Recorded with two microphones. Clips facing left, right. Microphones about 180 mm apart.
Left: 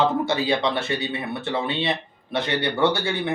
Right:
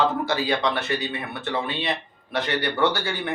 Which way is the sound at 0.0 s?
25° left (ahead or behind).